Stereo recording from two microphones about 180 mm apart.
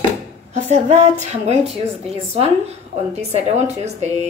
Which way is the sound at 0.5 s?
40° right (ahead or behind).